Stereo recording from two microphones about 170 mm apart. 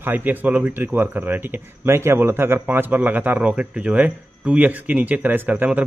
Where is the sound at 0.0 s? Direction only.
10° right (ahead or behind).